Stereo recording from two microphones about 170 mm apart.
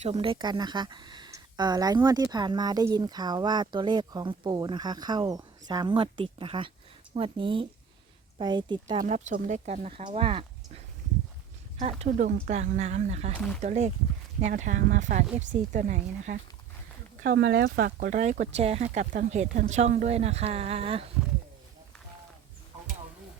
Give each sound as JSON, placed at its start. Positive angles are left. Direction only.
{"t": 0.0, "sound": "speech", "side_deg": -35}
{"t": 9.0, "sound": "speech", "side_deg": -45}
{"t": 10.0, "sound": "speech", "side_deg": -30}
{"t": 11.8, "sound": "speech", "side_deg": -40}
{"t": 17.2, "sound": "speech", "side_deg": -80}